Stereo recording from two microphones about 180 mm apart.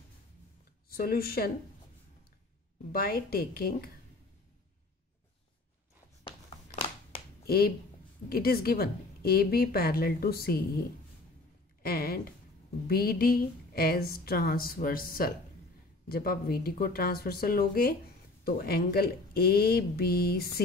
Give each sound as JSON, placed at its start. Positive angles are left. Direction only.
{"t": 0.8, "sound": "a woman's voice", "side_deg": 55}
{"t": 2.9, "sound": "a woman's voice", "side_deg": 55}
{"t": 6.2, "sound": "a sound", "side_deg": 30}
{"t": 7.4, "sound": "a woman's voice", "side_deg": 55}
{"t": 11.8, "sound": "a woman's voice", "side_deg": 55}